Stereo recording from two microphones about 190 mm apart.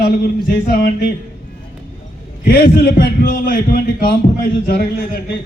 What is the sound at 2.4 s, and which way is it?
A man's voice, 50° left (ahead or behind).